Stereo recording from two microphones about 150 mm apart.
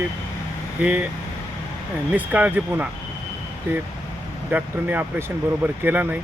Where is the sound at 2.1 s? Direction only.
10° right (ahead or behind).